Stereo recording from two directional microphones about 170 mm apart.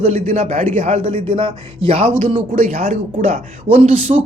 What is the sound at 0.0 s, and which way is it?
Speech, 40° right (ahead or behind).